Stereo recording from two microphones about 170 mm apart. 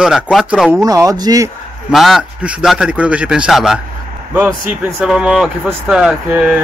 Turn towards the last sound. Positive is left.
turn(degrees=-5)  # may be behind; listen again after turning